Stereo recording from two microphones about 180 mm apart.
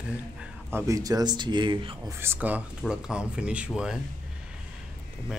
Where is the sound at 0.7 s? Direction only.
20° right (ahead or behind).